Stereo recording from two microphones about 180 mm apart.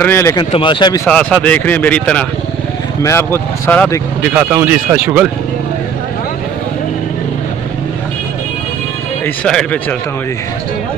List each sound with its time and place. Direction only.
0.0 s speech: 15° left (ahead or behind)
0.5 s speech: 30° left (ahead or behind)
1.0 s speech: 5° left (ahead or behind)
4.3 s speech: 10° right (ahead or behind)
9.2 s speech: 5° left (ahead or behind)